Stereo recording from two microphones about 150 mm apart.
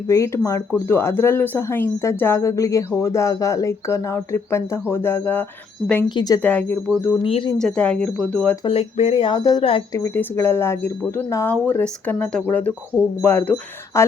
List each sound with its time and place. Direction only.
0.1 s speech: 20° left (ahead or behind)
6.1 s speech: 30° left (ahead or behind)
6.4 s speech: 10° left (ahead or behind)
7.2 s speech: 35° left (ahead or behind)
7.6 s speech: 5° left (ahead or behind)
8.6 s speech: 40° left (ahead or behind)
9.4 s speech: 25° left (ahead or behind)